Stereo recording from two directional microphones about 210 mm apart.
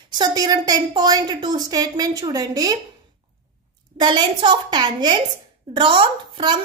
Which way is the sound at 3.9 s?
20° right (ahead or behind).